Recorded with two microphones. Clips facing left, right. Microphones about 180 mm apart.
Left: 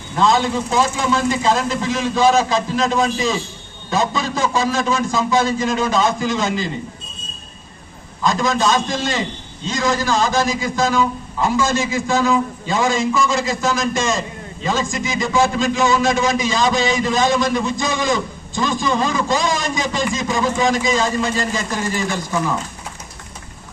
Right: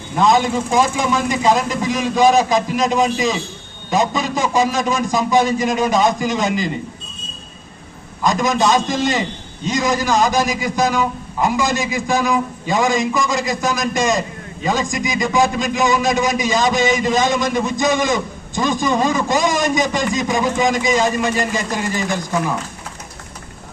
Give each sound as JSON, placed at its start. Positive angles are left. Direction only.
{"t": 0.2, "sound": "a man's voice", "side_deg": -15}
{"t": 8.2, "sound": "a man's voice", "side_deg": -15}